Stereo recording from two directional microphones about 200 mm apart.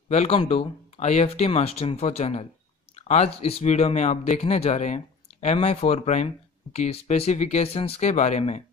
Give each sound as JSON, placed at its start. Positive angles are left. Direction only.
{"t": 0.1, "sound": "speech", "side_deg": 35}
{"t": 3.0, "sound": "a sound", "side_deg": 35}
{"t": 3.3, "sound": "speech", "side_deg": 30}